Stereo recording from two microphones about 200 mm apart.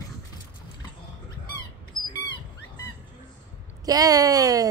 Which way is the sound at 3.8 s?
20° right (ahead or behind).